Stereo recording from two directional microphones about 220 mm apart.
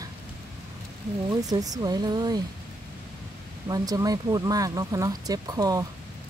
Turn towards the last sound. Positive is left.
turn(degrees=-15)  # may be behind; listen again after turning